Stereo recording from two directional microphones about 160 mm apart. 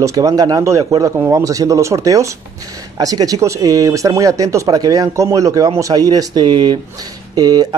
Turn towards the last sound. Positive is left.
turn(degrees=-25)  # may be behind; listen again after turning